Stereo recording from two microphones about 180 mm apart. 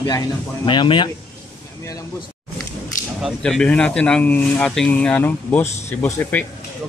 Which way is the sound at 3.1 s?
Centre (ahead or behind).